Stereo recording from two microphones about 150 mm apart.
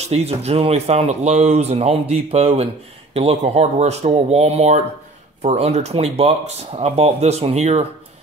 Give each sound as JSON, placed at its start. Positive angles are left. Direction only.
{"t": 0.1, "sound": "speech", "side_deg": -45}